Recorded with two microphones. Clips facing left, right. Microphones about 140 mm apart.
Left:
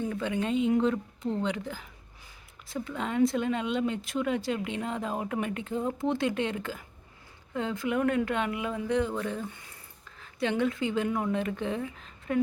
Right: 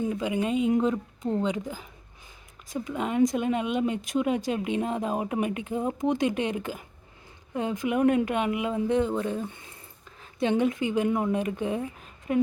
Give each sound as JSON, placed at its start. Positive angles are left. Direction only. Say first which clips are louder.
{"t": 0.0, "sound": "speech", "louder": "right 3 dB", "side_deg": -15}